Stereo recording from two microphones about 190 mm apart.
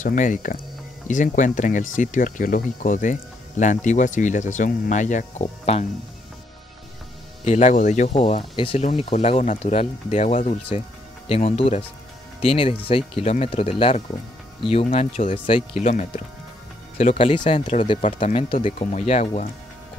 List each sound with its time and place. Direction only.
0.0 s speech: 45° left (ahead or behind)
7.4 s speech: 40° left (ahead or behind)
17.6 s speech: 40° left (ahead or behind)
18.2 s speech: 30° left (ahead or behind)